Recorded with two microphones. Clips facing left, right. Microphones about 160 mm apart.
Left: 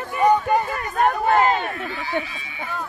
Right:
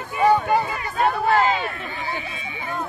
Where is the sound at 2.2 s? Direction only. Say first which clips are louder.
Right 2 dB; 25° right (ahead or behind).